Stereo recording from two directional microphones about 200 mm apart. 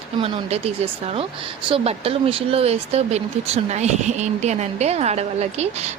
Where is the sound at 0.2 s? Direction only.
30° right (ahead or behind).